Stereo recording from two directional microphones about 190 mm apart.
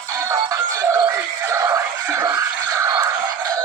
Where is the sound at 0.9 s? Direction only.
15° right (ahead or behind).